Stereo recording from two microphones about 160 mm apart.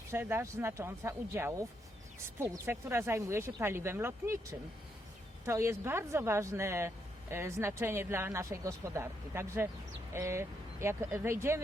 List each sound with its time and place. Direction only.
0.1 s speech: 15° right (ahead or behind)